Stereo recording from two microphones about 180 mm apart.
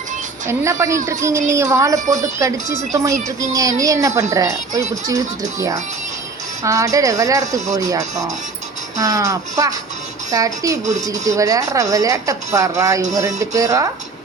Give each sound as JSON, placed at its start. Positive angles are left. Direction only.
{"t": 0.4, "sound": "a woman's voice", "side_deg": -15}